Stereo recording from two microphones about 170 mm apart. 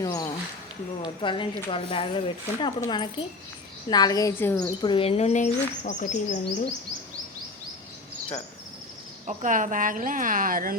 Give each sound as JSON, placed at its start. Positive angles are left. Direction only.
{"t": 0.0, "sound": "speech", "side_deg": 20}
{"t": 4.8, "sound": "speech", "side_deg": 30}
{"t": 9.2, "sound": "speech", "side_deg": -50}